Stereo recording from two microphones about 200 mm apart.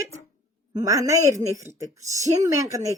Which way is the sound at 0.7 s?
15° right (ahead or behind).